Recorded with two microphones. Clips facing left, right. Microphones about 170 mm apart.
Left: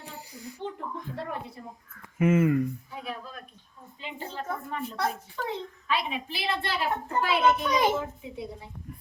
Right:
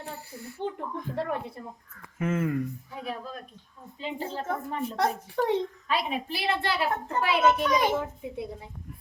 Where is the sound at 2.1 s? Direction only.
10° left (ahead or behind).